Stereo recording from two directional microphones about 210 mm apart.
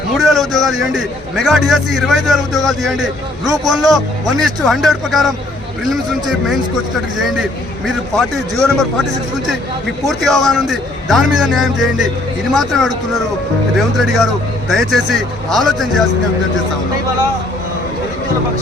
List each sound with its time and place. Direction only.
0.1 s a man's voice: centre (ahead or behind)
3.4 s a man's voice: 15° right (ahead or behind)
3.8 s a man's voice: centre (ahead or behind)
7.9 s a man's voice: centre (ahead or behind)
10.1 s a man's voice: centre (ahead or behind)